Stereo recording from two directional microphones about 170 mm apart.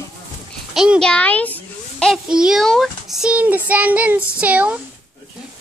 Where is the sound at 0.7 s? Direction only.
5° right (ahead or behind).